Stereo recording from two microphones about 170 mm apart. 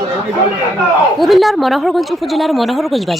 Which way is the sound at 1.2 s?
Centre (ahead or behind).